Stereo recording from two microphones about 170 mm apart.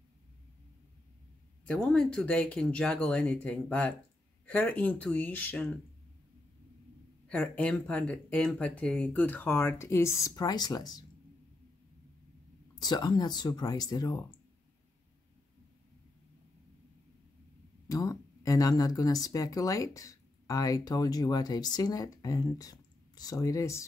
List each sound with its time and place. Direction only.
1.7 s speech: 5° left (ahead or behind)
7.2 s speech: 5° left (ahead or behind); by 11.1 s 25° left (ahead or behind)
12.7 s speech: 25° left (ahead or behind)
17.8 s speech: 20° left (ahead or behind)